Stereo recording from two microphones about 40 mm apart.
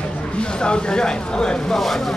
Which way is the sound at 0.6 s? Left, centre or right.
Left.